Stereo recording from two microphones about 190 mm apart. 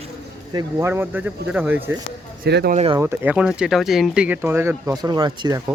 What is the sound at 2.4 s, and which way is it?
Speech, 60° right (ahead or behind).